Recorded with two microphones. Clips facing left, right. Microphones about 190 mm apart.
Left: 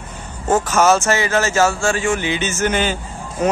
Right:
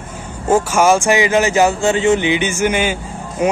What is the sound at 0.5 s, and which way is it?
Speech, 10° right (ahead or behind).